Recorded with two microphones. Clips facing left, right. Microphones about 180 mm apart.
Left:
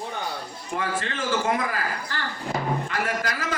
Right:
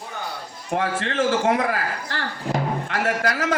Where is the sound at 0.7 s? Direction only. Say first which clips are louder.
Right 6 dB; 75° right (ahead or behind).